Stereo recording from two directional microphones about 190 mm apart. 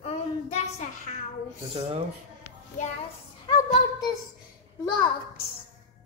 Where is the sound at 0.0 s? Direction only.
35° left (ahead or behind).